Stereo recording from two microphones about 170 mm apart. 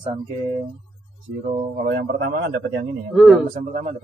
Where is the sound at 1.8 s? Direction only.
60° right (ahead or behind).